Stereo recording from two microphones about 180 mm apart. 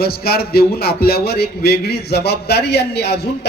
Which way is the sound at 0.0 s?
60° left (ahead or behind).